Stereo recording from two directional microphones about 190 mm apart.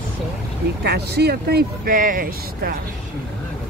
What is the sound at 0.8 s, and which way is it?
Speech, 60° right (ahead or behind).